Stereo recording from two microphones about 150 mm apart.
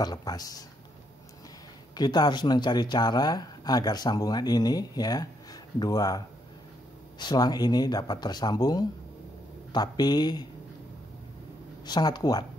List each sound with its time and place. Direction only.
0.0 s speech: 25° left (ahead or behind)
2.0 s speech: 30° left (ahead or behind)
11.8 s speech: 30° left (ahead or behind)